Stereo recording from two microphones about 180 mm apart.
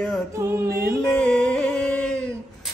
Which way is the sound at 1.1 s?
5° left (ahead or behind).